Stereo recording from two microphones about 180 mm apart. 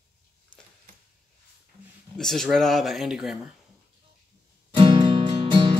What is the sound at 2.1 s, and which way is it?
Speech, centre (ahead or behind).